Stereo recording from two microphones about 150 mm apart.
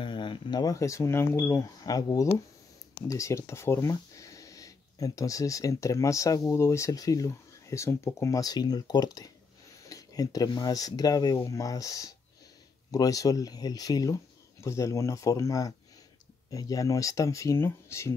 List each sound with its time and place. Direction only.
0.0 s speech: 30° left (ahead or behind)